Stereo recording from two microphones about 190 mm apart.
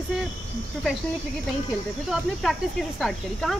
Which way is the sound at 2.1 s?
Centre (ahead or behind).